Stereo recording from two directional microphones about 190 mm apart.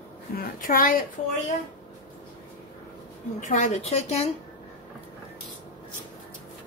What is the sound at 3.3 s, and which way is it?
Speech, 40° left (ahead or behind).